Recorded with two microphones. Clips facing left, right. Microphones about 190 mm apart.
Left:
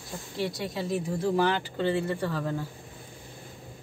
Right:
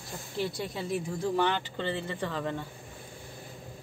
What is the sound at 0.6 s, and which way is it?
A woman's voice, centre (ahead or behind).